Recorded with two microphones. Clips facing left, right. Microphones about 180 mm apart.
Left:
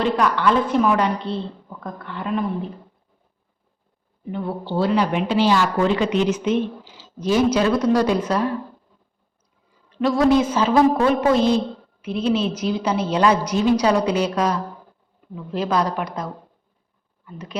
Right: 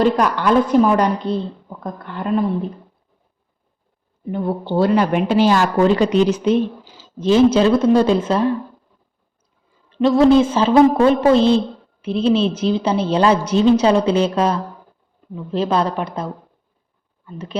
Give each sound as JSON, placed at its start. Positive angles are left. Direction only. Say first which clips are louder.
{"t": 0.0, "sound": "a woman's voice", "louder": "right 3 dB", "side_deg": -45}
{"t": 4.3, "sound": "a woman's voice", "louder": "right 5 dB", "side_deg": -45}
{"t": 9.9, "sound": "a woman's voice", "louder": "right 5 dB", "side_deg": -25}